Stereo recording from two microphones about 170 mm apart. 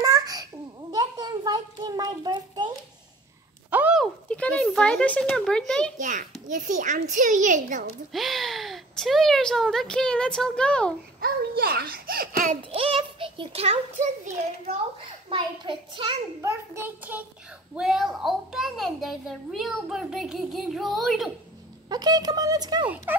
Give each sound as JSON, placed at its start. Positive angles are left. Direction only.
{"t": 0.0, "sound": "babbling", "side_deg": -20}
{"t": 0.9, "sound": "a sound", "side_deg": -25}
{"t": 3.7, "sound": "a sound", "side_deg": -10}
{"t": 4.0, "sound": "speech", "side_deg": 5}
{"t": 5.9, "sound": "a child's voice", "side_deg": -50}
{"t": 8.1, "sound": "a child's voice", "side_deg": 0}
{"t": 11.1, "sound": "a child's voice", "side_deg": -65}
{"t": 12.7, "sound": "a child's voice", "side_deg": -30}
{"t": 15.2, "sound": "speech", "side_deg": -30}
{"t": 16.3, "sound": "a child's voice", "side_deg": -15}
{"t": 21.8, "sound": "speech", "side_deg": -25}
{"t": 23.1, "sound": "a child's voice", "side_deg": -10}